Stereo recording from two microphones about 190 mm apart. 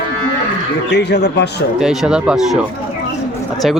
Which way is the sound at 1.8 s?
Centre (ahead or behind).